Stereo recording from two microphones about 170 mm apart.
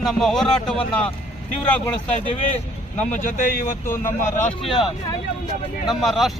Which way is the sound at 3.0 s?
50° left (ahead or behind).